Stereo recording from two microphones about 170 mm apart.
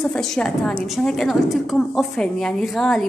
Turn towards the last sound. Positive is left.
turn(degrees=5)  # may be behind; listen again after turning